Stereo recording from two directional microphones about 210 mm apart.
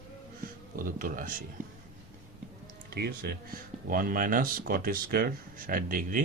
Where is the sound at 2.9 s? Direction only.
45° right (ahead or behind).